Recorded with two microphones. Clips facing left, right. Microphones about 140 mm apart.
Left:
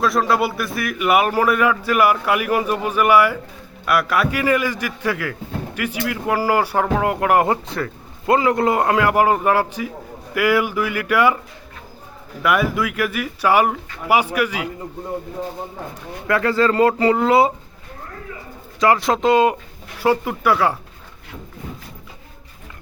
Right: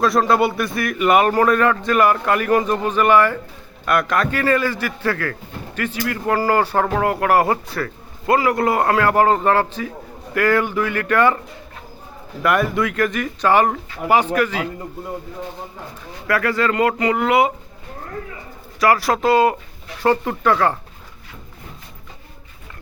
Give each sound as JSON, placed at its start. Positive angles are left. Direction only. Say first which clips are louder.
{"t": 0.0, "sound": "a man's voice", "louder": "right 2 dB", "side_deg": 0}
{"t": 12.4, "sound": "a man's voice", "louder": "right 1 dB", "side_deg": 0}
{"t": 16.2, "sound": "speech", "louder": "left 2 dB", "side_deg": 25}
{"t": 18.8, "sound": "a man's voice", "louder": "even", "side_deg": 20}